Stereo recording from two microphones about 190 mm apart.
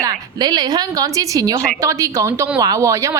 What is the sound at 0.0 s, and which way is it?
A woman's voice, 20° right (ahead or behind).